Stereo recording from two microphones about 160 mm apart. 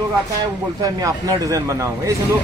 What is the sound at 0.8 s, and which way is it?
Speech, 20° right (ahead or behind).